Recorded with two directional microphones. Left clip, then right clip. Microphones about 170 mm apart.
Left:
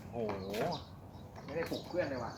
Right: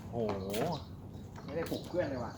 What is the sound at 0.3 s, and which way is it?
Speech, 50° right (ahead or behind).